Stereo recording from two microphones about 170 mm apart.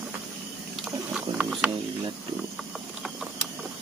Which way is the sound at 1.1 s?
5° right (ahead or behind).